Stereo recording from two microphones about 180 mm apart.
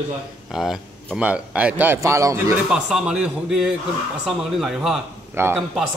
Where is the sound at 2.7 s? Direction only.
5° right (ahead or behind).